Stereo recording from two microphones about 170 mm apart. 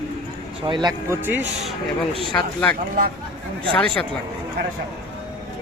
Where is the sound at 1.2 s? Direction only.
10° right (ahead or behind).